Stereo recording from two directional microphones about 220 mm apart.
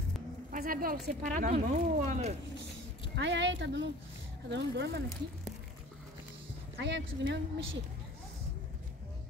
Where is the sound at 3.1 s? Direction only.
55° right (ahead or behind).